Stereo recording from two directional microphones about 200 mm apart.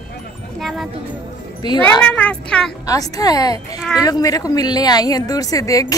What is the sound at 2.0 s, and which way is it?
Speech, 5° left (ahead or behind).